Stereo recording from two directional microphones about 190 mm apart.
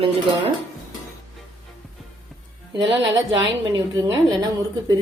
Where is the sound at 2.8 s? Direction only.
25° right (ahead or behind).